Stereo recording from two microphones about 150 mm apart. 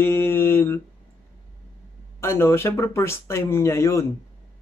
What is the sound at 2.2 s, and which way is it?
A man's voice, 15° left (ahead or behind).